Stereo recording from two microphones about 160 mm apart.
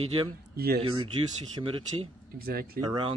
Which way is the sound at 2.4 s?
75° right (ahead or behind).